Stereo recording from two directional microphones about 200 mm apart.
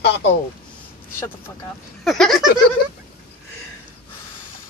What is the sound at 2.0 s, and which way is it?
Speech, centre (ahead or behind).